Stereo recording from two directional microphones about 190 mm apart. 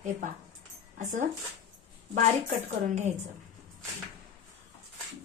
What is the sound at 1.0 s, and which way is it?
A woman's voice, 40° right (ahead or behind).